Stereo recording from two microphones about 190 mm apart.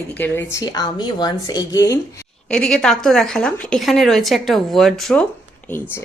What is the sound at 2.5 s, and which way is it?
A woman's voice, 5° left (ahead or behind).